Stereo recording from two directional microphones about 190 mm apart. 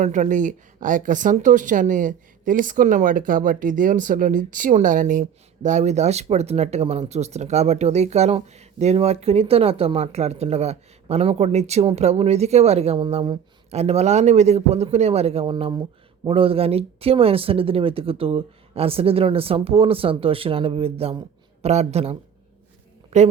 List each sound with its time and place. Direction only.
0.0 s a woman's voice: 40° right (ahead or behind)